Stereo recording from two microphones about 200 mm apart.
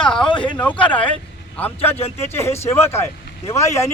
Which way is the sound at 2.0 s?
30° left (ahead or behind).